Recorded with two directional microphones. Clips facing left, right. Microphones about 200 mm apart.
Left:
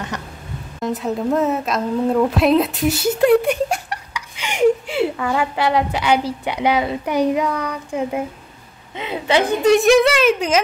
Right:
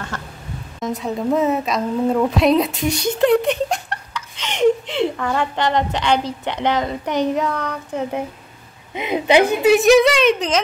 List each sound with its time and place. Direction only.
0.1 s a sound: 15° left (ahead or behind)
0.7 s a woman's voice: centre (ahead or behind)
8.9 s a woman's voice: 15° right (ahead or behind); by 10.6 s 5° left (ahead or behind)